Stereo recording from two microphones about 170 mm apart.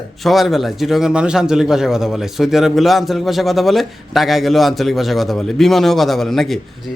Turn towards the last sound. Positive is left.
turn(degrees=0)  # may be behind; listen again after turning